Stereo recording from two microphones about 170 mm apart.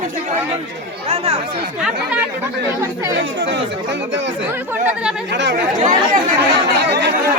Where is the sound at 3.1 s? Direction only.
90° right.